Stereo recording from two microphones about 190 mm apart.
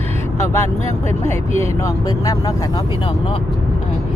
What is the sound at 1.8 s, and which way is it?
Speech, 20° left (ahead or behind).